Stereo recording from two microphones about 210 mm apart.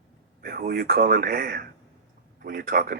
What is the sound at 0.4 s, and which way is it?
Speech, 45° right (ahead or behind).